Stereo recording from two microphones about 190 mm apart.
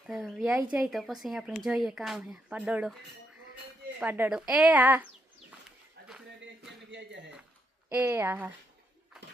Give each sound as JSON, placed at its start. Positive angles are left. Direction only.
{"t": 0.1, "sound": "speech", "side_deg": 0}
{"t": 4.0, "sound": "a woman's voice", "side_deg": -10}
{"t": 6.0, "sound": "a sound", "side_deg": -60}
{"t": 6.9, "sound": "a man's voice", "side_deg": -65}
{"t": 7.9, "sound": "a woman's voice", "side_deg": -10}